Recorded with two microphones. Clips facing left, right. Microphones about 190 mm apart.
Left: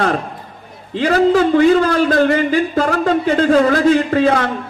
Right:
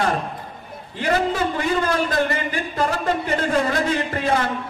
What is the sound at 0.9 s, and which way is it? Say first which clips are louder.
A man's voice: left 8 dB; 75° left (ahead or behind).